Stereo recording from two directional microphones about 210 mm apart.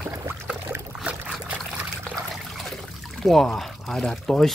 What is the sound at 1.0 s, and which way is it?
Trickle, centre (ahead or behind).